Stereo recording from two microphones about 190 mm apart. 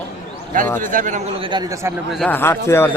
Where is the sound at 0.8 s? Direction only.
45° right (ahead or behind).